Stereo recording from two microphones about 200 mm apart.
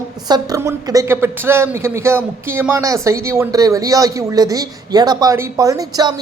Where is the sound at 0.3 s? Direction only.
20° right (ahead or behind).